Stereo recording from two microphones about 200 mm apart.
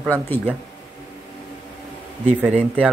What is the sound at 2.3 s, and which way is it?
Speech, 5° right (ahead or behind).